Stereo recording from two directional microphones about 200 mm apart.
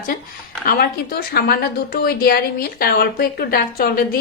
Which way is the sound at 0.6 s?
50° left (ahead or behind).